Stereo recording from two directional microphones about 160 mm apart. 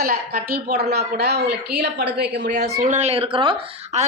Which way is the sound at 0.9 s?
90° right.